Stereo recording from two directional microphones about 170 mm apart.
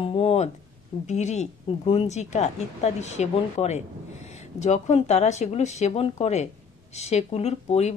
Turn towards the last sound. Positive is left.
turn(degrees=40)  # may be behind; listen again after turning